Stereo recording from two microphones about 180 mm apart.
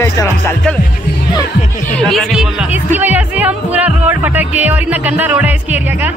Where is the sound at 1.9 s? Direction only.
Centre (ahead or behind).